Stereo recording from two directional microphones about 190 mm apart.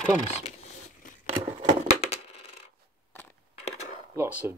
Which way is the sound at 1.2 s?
30° right (ahead or behind).